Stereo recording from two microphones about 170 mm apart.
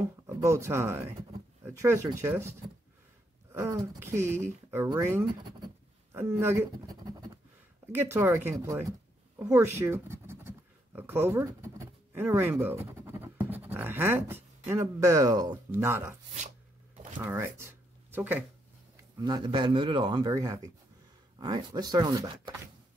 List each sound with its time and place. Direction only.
0.3 s speech: 15° right (ahead or behind)
3.6 s speech: 15° right (ahead or behind)
17.2 s speech: 15° right (ahead or behind)
19.1 s a man's voice: 25° right (ahead or behind)